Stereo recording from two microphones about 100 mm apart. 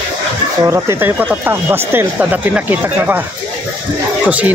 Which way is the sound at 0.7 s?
30° right (ahead or behind).